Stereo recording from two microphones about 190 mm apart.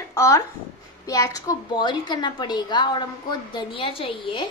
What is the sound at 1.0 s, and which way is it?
A woman's voice, 15° left (ahead or behind).